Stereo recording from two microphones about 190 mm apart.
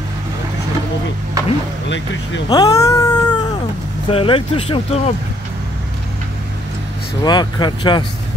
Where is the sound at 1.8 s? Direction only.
70° left (ahead or behind).